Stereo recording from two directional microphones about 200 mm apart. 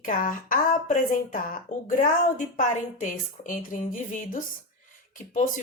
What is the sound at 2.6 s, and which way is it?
A woman's voice, 40° left (ahead or behind).